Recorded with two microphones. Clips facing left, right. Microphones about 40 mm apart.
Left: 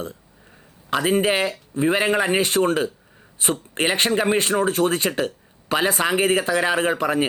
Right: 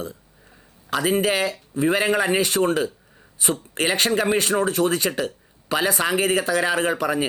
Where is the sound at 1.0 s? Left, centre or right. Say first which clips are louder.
Left 1 dB; left.